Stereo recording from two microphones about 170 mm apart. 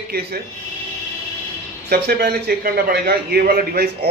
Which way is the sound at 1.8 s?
70° right (ahead or behind).